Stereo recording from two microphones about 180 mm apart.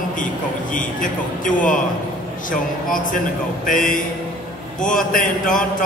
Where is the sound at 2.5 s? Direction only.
50° left (ahead or behind).